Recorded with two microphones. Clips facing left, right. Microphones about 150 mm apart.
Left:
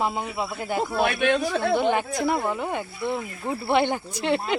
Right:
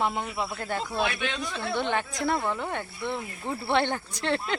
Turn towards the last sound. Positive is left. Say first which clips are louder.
# left 4 dB
turn(degrees=10)  # may be behind; listen again after turning